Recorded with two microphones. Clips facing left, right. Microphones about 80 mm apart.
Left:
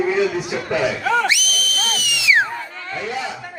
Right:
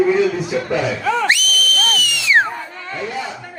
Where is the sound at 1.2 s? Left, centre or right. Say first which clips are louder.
Right 3 dB; right.